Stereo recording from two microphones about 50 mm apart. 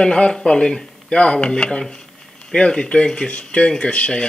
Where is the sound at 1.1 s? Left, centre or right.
Left.